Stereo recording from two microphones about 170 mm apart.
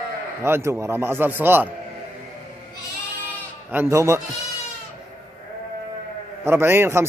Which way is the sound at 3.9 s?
15° right (ahead or behind).